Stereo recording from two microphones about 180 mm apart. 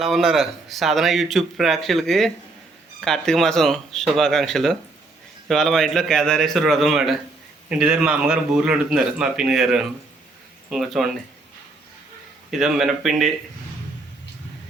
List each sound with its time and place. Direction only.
0.0 s speech: centre (ahead or behind)
12.5 s speech: centre (ahead or behind)